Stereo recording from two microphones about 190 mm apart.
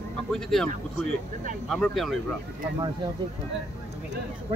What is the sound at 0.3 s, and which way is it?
Speech, centre (ahead or behind).